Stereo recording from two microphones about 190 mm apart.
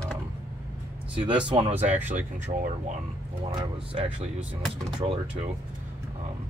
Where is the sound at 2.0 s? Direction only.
40° right (ahead or behind).